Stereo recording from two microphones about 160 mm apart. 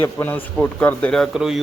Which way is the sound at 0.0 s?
15° left (ahead or behind).